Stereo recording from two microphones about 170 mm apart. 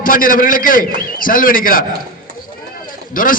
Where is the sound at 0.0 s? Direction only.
55° left (ahead or behind).